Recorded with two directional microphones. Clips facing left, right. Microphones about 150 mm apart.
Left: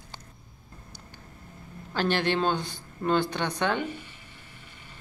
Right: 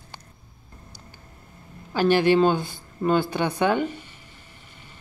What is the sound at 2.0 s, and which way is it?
Speech, 10° right (ahead or behind).